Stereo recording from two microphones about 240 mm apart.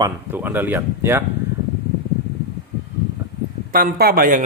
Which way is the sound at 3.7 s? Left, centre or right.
Right.